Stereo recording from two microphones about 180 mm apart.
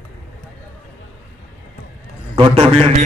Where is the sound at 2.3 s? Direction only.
30° right (ahead or behind).